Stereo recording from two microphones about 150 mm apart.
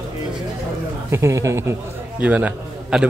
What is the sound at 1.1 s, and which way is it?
A man's voice, 20° right (ahead or behind).